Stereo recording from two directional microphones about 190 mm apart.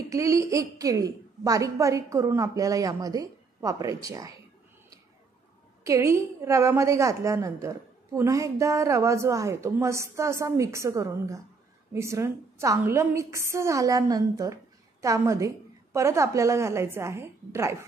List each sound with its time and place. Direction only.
0.1 s a woman's voice: 15° right (ahead or behind)
5.9 s a woman's voice: 15° right (ahead or behind)